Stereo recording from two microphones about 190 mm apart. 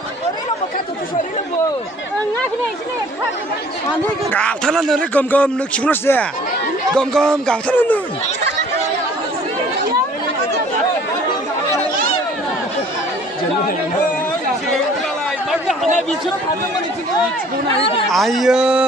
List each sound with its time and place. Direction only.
4.3 s a man's voice: 5° left (ahead or behind)
17.7 s speech: 30° left (ahead or behind)
18.0 s speech: centre (ahead or behind)